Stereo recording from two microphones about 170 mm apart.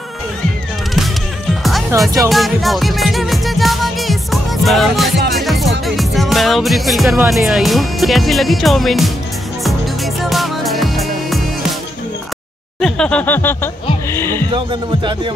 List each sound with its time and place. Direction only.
2.2 s music: centre (ahead or behind)
7.2 s speech: centre (ahead or behind)
10.2 s music: centre (ahead or behind)
12.8 s a sound: 5° left (ahead or behind)
14.1 s speech: 15° left (ahead or behind)
14.5 s speech: 30° right (ahead or behind)